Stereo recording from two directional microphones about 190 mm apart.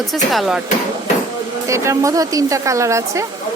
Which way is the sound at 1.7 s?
15° right (ahead or behind).